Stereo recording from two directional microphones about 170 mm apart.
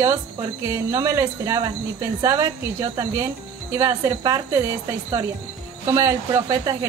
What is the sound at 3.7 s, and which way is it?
Speech, 20° right (ahead or behind).